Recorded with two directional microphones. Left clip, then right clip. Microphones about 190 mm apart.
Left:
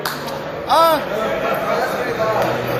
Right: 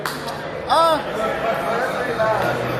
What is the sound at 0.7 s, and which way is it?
Speech, 10° left (ahead or behind).